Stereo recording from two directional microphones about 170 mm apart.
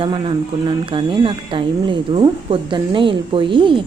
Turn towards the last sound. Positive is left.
turn(degrees=-30)  # may be behind; listen again after turning